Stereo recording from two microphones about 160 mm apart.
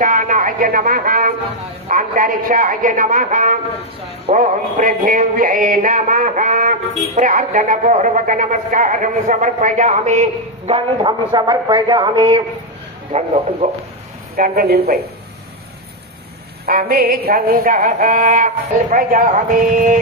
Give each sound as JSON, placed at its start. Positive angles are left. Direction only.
{"t": 0.0, "sound": "music", "side_deg": -55}
{"t": 11.0, "sound": "a man's voice", "side_deg": -30}
{"t": 14.3, "sound": "speech", "side_deg": -65}
{"t": 16.6, "sound": "music", "side_deg": -65}